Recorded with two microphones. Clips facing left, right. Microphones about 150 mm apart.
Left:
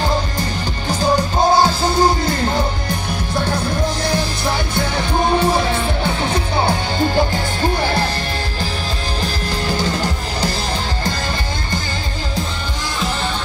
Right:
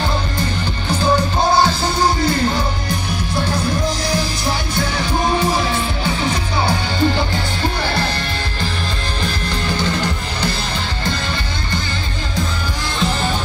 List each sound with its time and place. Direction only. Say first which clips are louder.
0.8 s music: even; 40° left (ahead or behind)
4.0 s music: left 1 dB; 55° left (ahead or behind)
9.2 s music: even; 35° left (ahead or behind)